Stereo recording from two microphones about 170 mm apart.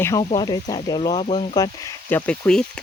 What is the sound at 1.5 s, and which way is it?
Speech, 20° left (ahead or behind).